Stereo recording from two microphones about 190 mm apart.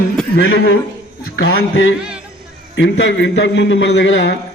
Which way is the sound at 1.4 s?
75° left (ahead or behind).